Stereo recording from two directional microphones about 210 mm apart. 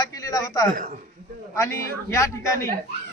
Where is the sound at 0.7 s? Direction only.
40° right (ahead or behind).